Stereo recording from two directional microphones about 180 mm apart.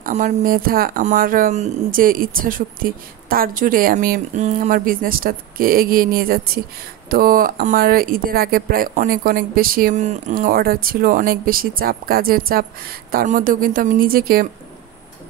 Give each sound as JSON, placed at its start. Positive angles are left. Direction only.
{"t": 0.0, "sound": "speech", "side_deg": -45}